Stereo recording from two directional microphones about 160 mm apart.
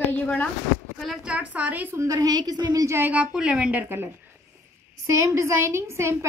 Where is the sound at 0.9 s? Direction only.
Centre (ahead or behind).